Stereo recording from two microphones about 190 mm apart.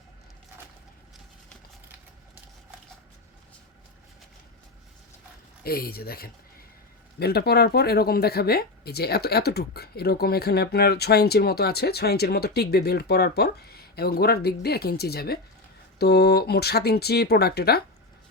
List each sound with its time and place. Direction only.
5.6 s speech: 55° left (ahead or behind)